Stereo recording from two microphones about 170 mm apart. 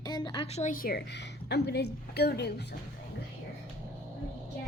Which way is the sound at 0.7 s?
60° left (ahead or behind).